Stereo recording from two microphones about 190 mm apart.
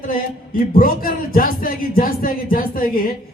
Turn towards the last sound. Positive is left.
turn(degrees=50)  # may be behind; listen again after turning